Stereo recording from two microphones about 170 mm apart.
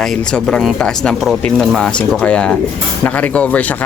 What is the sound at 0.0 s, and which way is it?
Speech, 5° left (ahead or behind).